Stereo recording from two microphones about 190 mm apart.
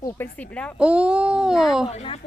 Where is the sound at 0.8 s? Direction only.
5° right (ahead or behind).